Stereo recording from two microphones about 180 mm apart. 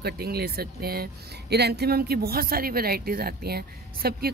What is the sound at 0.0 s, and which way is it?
Speech, 60° right (ahead or behind).